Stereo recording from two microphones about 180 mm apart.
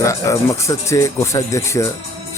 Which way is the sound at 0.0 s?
15° left (ahead or behind).